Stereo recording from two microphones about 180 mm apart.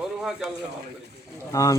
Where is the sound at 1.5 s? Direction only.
20° left (ahead or behind).